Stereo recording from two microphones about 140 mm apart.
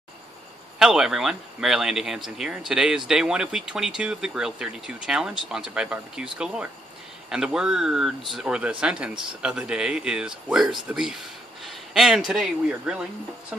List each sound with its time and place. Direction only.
0.7 s speech: 5° right (ahead or behind)